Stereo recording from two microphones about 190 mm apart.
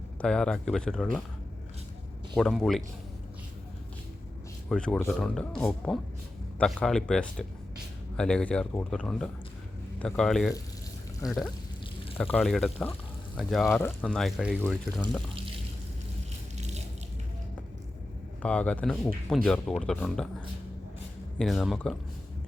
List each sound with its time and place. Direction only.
0.2 s speech: 5° left (ahead or behind)
2.3 s speech: centre (ahead or behind)
4.7 s speech: 5° left (ahead or behind)
16.6 s a sound: 35° right (ahead or behind)
18.4 s speech: 5° left (ahead or behind)
21.3 s speech: centre (ahead or behind)